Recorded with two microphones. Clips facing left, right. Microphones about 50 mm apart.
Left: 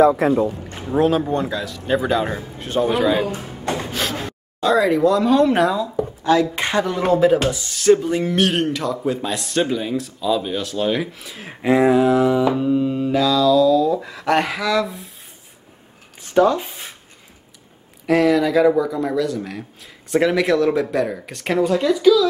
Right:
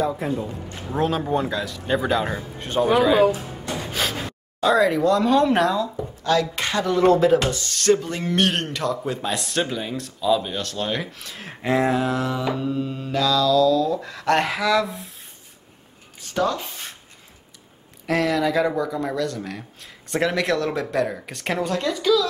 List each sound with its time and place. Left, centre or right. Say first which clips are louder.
0.0 s speech: left 10 dB; left
0.8 s speech: left 5 dB; centre
3.9 s gasp: left 2 dB; centre
6.5 s speech: left 4 dB; left
6.9 s speech: right 1 dB; centre
16.2 s a sound: left 7 dB; centre
18.0 s speech: left 5 dB; centre